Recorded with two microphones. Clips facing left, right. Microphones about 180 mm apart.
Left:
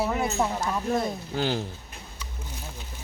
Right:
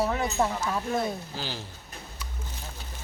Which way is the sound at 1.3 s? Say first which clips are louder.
Left 9 dB; 55° left (ahead or behind).